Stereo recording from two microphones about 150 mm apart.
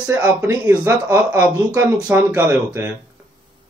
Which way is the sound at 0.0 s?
10° right (ahead or behind).